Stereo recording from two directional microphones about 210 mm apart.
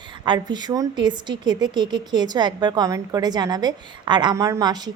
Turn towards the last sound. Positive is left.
turn(degrees=-20)  # may be behind; listen again after turning